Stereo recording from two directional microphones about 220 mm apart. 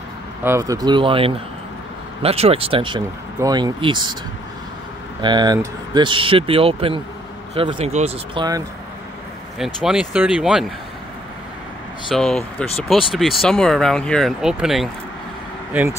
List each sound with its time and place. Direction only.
0.4 s speech: 10° right (ahead or behind)
5.2 s speech: 20° right (ahead or behind)
9.8 s speech: 5° right (ahead or behind)
12.1 s speech: 5° left (ahead or behind)